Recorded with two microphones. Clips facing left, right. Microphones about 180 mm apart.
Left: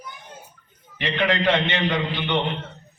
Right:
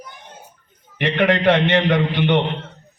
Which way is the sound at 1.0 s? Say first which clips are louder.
Right 5 dB; 60° right (ahead or behind).